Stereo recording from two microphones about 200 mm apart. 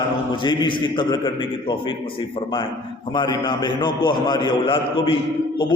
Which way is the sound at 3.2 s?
20° left (ahead or behind).